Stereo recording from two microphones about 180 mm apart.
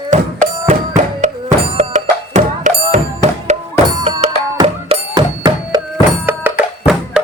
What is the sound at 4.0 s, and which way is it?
Music, 40° right (ahead or behind).